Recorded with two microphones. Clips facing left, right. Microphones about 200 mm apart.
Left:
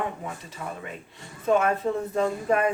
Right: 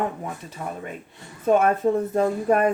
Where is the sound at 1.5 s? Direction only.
50° right (ahead or behind).